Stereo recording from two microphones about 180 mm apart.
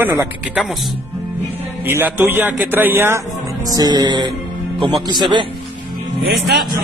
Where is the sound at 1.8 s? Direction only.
10° right (ahead or behind).